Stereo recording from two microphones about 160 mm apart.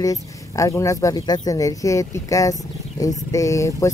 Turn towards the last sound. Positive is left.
turn(degrees=20)  # may be behind; listen again after turning